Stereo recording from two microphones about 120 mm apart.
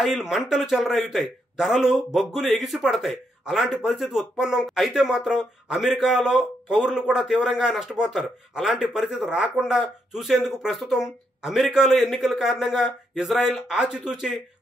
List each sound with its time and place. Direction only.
0.0 s a man's voice: 5° right (ahead or behind)